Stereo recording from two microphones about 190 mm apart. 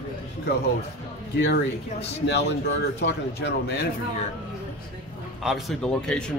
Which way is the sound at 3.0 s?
60° left (ahead or behind).